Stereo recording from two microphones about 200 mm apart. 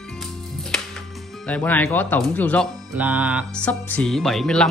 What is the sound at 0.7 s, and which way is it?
Music, centre (ahead or behind).